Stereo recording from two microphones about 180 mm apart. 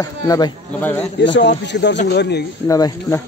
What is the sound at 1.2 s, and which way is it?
Speech, 80° left.